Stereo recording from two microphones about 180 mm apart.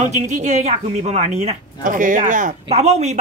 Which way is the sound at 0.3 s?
40° right (ahead or behind).